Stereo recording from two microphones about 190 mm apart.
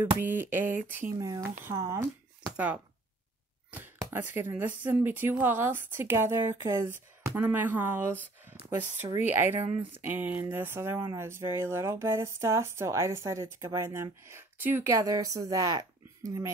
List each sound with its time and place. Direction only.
0.0 s speech: 10° right (ahead or behind)